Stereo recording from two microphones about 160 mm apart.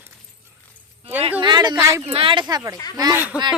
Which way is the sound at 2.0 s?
35° right (ahead or behind).